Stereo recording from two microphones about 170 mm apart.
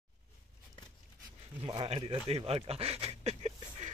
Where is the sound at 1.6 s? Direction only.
30° right (ahead or behind).